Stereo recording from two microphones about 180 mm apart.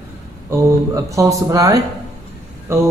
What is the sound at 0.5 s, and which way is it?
A man's voice, 20° right (ahead or behind).